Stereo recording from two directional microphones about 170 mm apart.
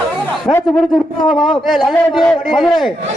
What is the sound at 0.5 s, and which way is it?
A man's voice, 10° left (ahead or behind).